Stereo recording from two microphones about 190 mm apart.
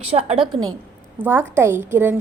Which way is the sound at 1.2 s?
10° right (ahead or behind).